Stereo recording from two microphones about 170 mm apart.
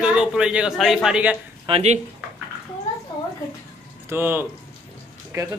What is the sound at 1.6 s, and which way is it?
Speech, 35° right (ahead or behind).